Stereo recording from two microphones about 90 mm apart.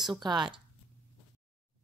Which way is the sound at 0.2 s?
55° right (ahead or behind).